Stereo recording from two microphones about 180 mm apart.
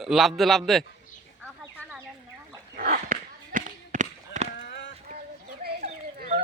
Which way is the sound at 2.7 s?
50° right (ahead or behind).